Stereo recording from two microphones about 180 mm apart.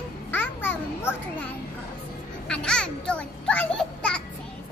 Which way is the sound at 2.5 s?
5° left (ahead or behind).